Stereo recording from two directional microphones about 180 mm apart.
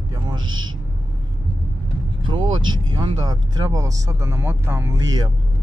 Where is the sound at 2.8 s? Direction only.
25° right (ahead or behind).